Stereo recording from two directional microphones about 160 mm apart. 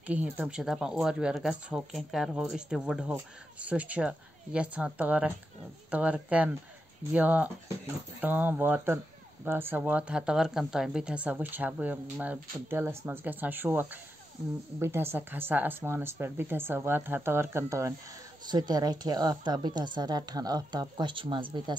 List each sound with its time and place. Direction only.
0.0 s speech: 10° right (ahead or behind); by 21.7 s 30° right (ahead or behind)